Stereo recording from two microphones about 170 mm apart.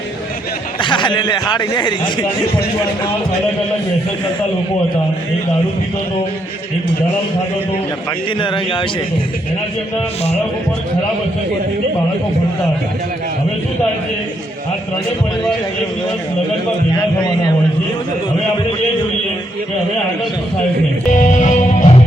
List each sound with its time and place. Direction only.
0.8 s a man's voice: 30° left (ahead or behind)
8.4 s a man's voice: 30° left (ahead or behind)
21.1 s music: 45° left (ahead or behind)